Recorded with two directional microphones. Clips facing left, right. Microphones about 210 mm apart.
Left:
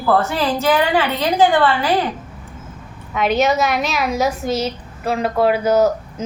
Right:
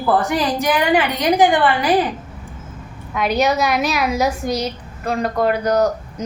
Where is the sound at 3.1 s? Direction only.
Centre (ahead or behind).